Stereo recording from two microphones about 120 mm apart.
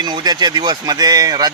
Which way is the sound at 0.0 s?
35° right (ahead or behind).